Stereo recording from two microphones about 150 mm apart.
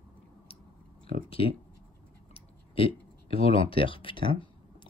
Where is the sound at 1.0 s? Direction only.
65° right (ahead or behind).